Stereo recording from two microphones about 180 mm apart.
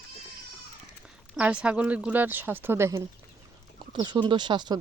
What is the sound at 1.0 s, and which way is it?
Speech, 5° right (ahead or behind).